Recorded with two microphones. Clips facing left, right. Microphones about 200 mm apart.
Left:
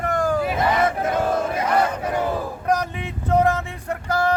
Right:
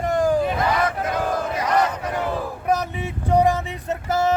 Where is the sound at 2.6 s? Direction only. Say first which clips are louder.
Right 1 dB; 10° right (ahead or behind).